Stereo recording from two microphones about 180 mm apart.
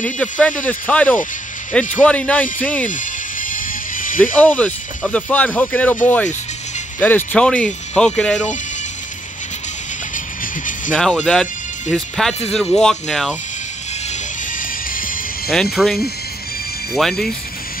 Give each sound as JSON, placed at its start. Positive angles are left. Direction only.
{"t": 0.0, "sound": "speech", "side_deg": 5}
{"t": 2.9, "sound": "music", "side_deg": 45}
{"t": 4.2, "sound": "speech", "side_deg": 10}
{"t": 7.0, "sound": "speech", "side_deg": 10}
{"t": 10.1, "sound": "music", "side_deg": 50}
{"t": 10.9, "sound": "speech", "side_deg": 5}
{"t": 14.6, "sound": "music", "side_deg": 50}
{"t": 15.5, "sound": "speech", "side_deg": 0}